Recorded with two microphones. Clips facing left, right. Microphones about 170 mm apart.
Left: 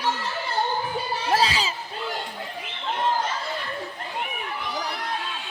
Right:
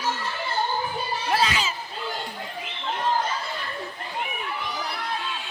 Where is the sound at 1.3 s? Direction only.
35° left (ahead or behind).